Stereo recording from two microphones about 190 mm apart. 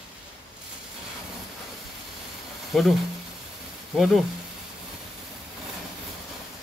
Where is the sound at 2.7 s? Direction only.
Centre (ahead or behind).